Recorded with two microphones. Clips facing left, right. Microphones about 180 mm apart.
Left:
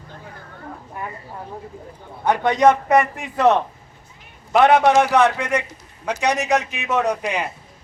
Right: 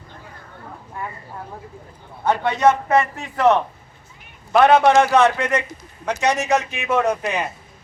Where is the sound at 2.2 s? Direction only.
15° left (ahead or behind).